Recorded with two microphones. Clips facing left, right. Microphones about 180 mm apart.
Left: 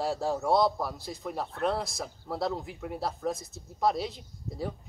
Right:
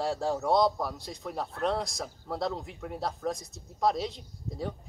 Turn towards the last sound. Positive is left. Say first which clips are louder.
# even
turn(degrees=0)  # may be behind; listen again after turning